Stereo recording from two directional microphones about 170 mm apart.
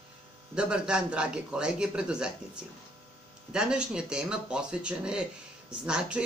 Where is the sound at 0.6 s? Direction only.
5° right (ahead or behind).